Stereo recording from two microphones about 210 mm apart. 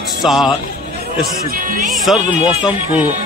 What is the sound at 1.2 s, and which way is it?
Speech, 40° right (ahead or behind).